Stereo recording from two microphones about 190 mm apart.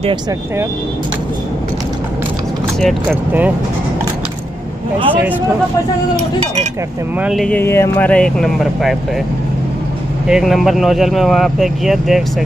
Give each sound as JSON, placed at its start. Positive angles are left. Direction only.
{"t": 2.8, "sound": "speech", "side_deg": 0}
{"t": 6.4, "sound": "speech", "side_deg": -35}
{"t": 7.2, "sound": "speech", "side_deg": 0}
{"t": 10.2, "sound": "speech", "side_deg": 0}